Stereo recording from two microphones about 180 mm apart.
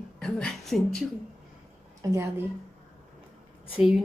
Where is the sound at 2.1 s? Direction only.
15° right (ahead or behind).